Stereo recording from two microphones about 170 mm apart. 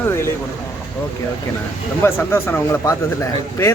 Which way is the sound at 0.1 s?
15° left (ahead or behind).